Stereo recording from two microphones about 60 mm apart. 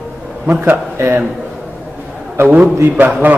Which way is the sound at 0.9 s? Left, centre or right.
Right.